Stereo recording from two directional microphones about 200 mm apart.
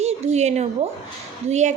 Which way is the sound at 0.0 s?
35° right (ahead or behind).